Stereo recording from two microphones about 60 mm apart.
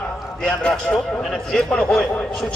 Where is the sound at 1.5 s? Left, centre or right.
Centre.